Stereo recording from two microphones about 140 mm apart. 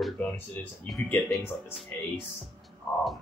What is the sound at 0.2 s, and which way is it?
Speech, 10° left (ahead or behind).